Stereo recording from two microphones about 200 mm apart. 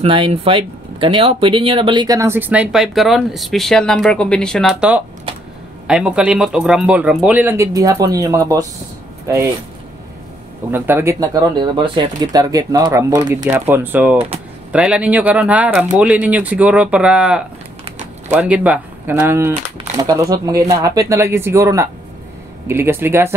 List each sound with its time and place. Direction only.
0.0 s speech: 25° right (ahead or behind)
10.7 s speech: 10° right (ahead or behind)